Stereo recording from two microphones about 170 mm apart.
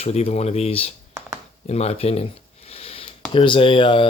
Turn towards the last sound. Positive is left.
turn(degrees=30)  # may be behind; listen again after turning